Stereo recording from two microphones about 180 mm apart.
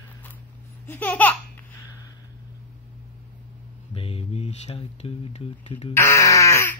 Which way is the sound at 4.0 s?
30° left (ahead or behind).